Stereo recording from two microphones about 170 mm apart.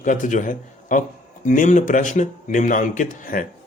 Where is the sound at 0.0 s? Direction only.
50° left (ahead or behind).